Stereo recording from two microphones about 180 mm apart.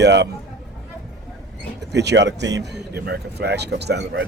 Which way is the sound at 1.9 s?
70° right (ahead or behind).